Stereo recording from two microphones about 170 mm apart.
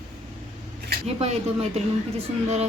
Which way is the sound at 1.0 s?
35° right (ahead or behind).